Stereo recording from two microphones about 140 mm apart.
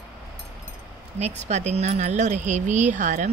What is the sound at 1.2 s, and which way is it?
Speech, 55° right (ahead or behind).